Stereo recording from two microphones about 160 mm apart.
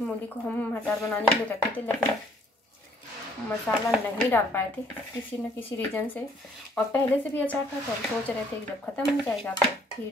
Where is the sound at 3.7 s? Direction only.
10° left (ahead or behind).